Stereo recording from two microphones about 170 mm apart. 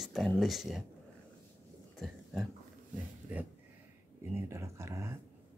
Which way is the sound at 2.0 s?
Centre (ahead or behind).